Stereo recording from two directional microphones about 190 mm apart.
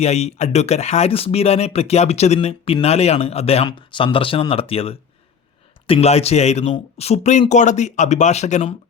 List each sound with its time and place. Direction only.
0.0 s speech: 35° left (ahead or behind)